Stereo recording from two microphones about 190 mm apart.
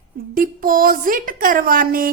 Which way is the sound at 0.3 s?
45° right (ahead or behind).